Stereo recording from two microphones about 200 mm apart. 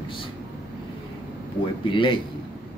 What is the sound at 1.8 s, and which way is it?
Speech, 25° left (ahead or behind).